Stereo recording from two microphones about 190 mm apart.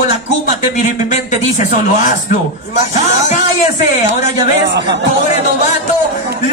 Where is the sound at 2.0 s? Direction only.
45° left (ahead or behind).